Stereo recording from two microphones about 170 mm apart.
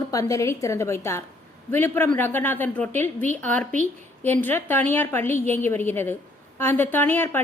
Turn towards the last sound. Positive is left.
turn(degrees=15)  # may be behind; listen again after turning